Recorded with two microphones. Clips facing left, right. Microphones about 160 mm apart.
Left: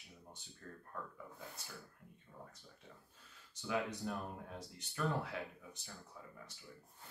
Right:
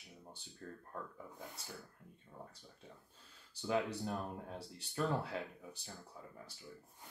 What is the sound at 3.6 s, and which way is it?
Speech, 35° right (ahead or behind).